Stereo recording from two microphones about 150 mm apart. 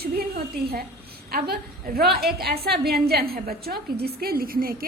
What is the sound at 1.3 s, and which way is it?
A woman's voice, 85° right.